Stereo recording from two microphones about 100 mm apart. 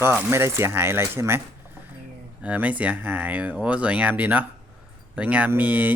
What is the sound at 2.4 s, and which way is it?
Speech, 15° right (ahead or behind).